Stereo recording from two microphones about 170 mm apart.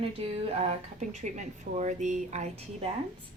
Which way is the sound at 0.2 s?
35° right (ahead or behind).